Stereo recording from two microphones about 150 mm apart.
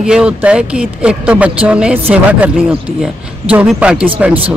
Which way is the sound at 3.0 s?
5° right (ahead or behind).